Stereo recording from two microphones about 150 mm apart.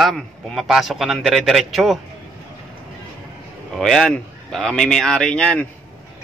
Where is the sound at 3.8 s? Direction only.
Centre (ahead or behind).